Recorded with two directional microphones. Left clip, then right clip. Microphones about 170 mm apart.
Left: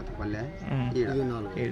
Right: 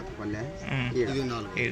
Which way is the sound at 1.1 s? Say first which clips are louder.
Left 1 dB; 60° left (ahead or behind).